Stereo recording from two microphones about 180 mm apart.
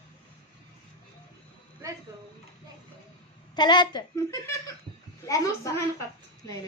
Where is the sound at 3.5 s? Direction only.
25° left (ahead or behind).